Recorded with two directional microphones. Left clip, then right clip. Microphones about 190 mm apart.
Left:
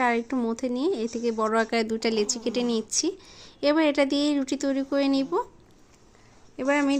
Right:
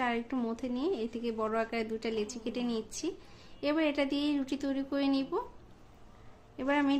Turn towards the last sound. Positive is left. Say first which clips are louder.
# left 6 dB
turn(degrees=35)  # may be behind; listen again after turning